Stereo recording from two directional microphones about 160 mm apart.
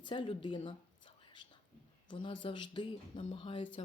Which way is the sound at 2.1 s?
30° left (ahead or behind).